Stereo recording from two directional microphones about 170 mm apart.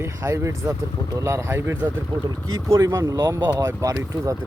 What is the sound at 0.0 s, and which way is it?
Speech, 15° right (ahead or behind).